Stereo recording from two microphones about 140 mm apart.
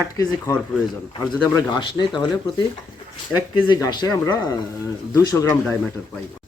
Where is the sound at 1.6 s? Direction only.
30° left (ahead or behind).